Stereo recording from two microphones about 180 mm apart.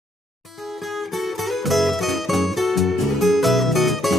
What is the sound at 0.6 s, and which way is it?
Music, centre (ahead or behind).